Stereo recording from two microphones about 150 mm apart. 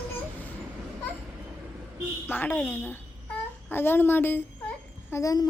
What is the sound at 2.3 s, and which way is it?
A woman's voice, 15° left (ahead or behind).